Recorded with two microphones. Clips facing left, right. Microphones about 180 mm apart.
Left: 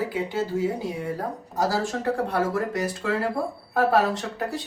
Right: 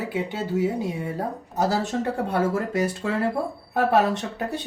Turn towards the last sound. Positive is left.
turn(degrees=-25)  # may be behind; listen again after turning